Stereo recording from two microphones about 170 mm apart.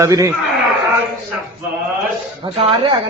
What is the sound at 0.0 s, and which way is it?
Speech, 20° right (ahead or behind).